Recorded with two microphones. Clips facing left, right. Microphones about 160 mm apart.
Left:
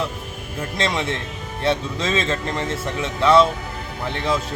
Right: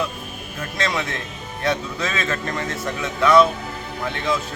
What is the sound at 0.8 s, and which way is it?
Speech, 25° left (ahead or behind).